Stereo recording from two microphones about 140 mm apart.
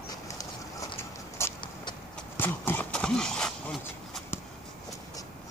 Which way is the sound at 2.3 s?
15° left (ahead or behind).